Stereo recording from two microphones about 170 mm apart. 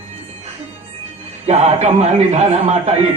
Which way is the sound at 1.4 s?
40° right (ahead or behind).